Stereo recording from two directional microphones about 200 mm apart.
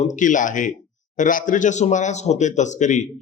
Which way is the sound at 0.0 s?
40° left (ahead or behind).